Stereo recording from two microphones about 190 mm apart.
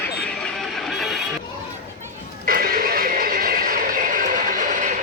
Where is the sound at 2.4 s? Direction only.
50° right (ahead or behind).